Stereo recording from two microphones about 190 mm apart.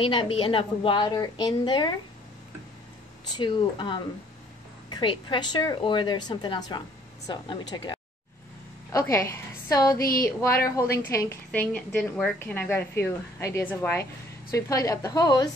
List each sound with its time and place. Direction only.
0.0 s a woman's voice: 30° left (ahead or behind)
3.3 s a woman's voice: 25° left (ahead or behind)
9.9 s a woman's voice: 50° left (ahead or behind)
10.8 s a woman's voice: 15° left (ahead or behind)